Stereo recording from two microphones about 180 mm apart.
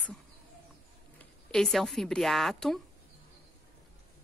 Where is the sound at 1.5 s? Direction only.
Centre (ahead or behind).